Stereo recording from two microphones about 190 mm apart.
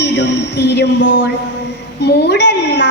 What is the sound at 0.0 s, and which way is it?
A woman's voice, 60° left (ahead or behind).